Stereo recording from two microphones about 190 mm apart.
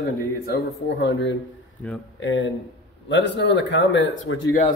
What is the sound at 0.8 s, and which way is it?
Speech, 65° left (ahead or behind).